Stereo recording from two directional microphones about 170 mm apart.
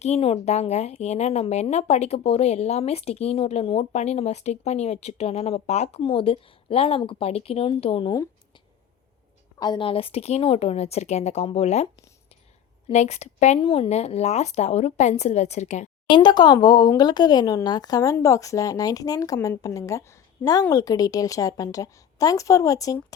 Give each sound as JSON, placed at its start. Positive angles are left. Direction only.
{"t": 0.0, "sound": "speech", "side_deg": 35}
{"t": 9.6, "sound": "speech", "side_deg": 25}
{"t": 12.9, "sound": "speech", "side_deg": 40}
{"t": 16.0, "sound": "speech", "side_deg": 25}